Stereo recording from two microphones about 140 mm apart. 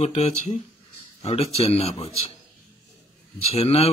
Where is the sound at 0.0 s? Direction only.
50° left (ahead or behind).